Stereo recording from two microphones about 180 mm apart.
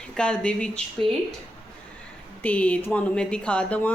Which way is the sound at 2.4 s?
5° left (ahead or behind).